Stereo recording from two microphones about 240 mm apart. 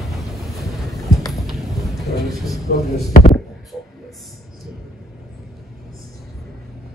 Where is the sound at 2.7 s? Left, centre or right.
Left.